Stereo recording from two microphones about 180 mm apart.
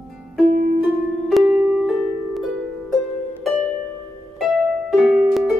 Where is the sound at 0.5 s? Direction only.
45° right (ahead or behind).